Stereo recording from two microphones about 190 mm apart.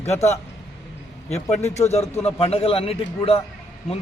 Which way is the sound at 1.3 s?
35° left (ahead or behind).